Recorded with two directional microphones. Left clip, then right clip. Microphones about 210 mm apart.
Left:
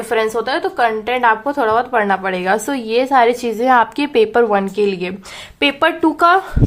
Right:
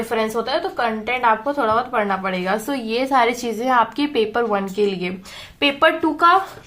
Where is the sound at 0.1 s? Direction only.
40° left (ahead or behind).